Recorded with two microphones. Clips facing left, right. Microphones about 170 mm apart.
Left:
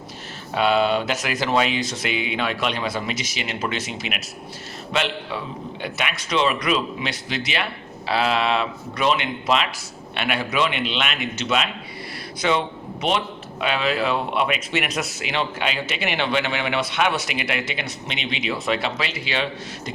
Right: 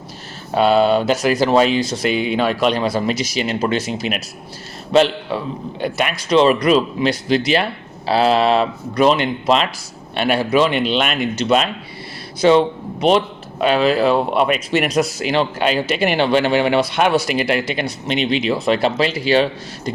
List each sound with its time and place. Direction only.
0.5 s a man's voice: 35° right (ahead or behind)